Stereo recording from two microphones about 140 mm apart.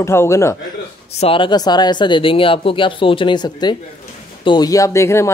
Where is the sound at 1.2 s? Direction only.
40° left (ahead or behind).